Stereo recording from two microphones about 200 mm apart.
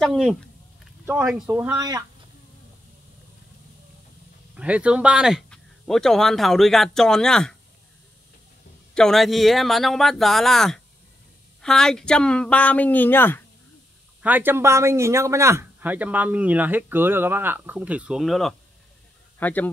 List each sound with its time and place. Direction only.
0.0 s speech: centre (ahead or behind)
1.8 s speech: 20° right (ahead or behind)
4.6 s speech: 5° right (ahead or behind)
8.9 s speech: centre (ahead or behind)
14.2 s speech: 10° right (ahead or behind); by 19.7 s 10° left (ahead or behind)